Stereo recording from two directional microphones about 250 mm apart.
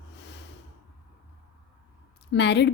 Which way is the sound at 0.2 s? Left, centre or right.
Left.